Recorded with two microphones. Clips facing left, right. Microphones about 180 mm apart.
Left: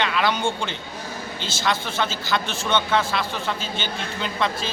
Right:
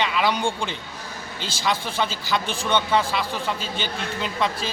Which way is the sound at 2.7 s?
10° right (ahead or behind).